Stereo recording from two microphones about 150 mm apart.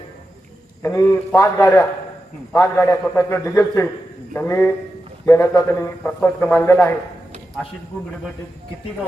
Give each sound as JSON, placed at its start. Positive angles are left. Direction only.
{"t": 0.9, "sound": "a man's voice", "side_deg": 15}